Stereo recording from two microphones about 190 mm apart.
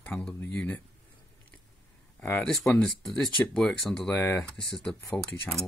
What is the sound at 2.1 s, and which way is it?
Speech, 10° left (ahead or behind).